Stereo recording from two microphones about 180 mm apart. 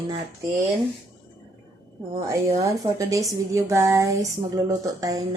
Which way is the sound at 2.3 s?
20° right (ahead or behind).